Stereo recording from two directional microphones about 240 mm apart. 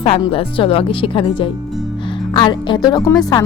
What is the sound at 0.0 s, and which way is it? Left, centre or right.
Speech, left.